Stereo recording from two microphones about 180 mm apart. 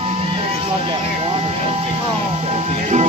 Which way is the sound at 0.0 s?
30° right (ahead or behind).